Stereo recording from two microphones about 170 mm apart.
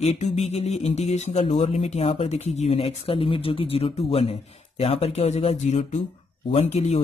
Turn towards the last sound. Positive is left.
turn(degrees=40)  # may be behind; listen again after turning